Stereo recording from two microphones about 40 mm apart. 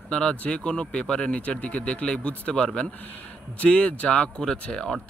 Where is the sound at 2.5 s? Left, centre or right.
Left.